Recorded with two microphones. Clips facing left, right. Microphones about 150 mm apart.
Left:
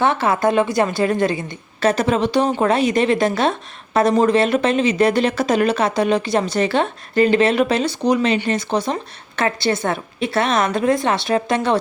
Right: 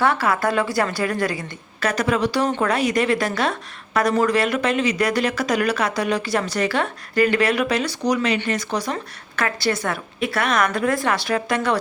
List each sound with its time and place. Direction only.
0.0 s a woman's voice: 20° left (ahead or behind)